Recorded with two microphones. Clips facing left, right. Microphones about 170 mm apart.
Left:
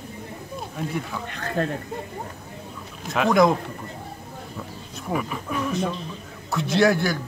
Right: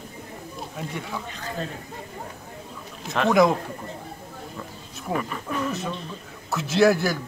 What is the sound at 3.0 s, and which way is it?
Speech, centre (ahead or behind).